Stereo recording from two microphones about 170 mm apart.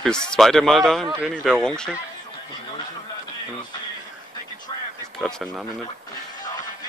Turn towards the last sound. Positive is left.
turn(degrees=5)  # may be behind; listen again after turning